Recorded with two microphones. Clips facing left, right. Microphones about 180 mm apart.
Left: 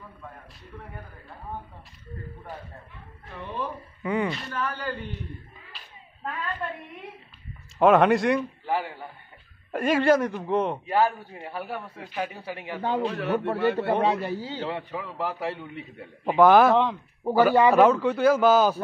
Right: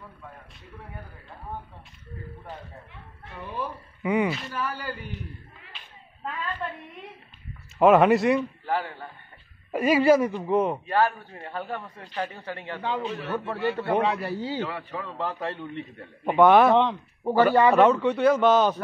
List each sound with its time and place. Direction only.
3.5 s a man's voice: 15° right (ahead or behind)
4.3 s a man's voice: 5° right (ahead or behind)
7.8 s speech: 5° right (ahead or behind)
8.6 s a man's voice: 15° left (ahead or behind)
9.7 s speech: 5° right (ahead or behind)
10.9 s a man's voice: 10° left (ahead or behind)
12.8 s a man's voice: 45° left (ahead or behind)
13.7 s a man's voice: 30° left (ahead or behind)
14.9 s a man's voice: 10° left (ahead or behind)